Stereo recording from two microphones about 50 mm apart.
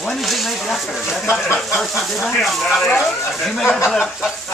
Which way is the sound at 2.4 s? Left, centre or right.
Centre.